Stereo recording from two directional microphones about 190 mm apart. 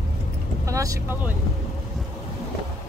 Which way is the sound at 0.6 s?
15° right (ahead or behind).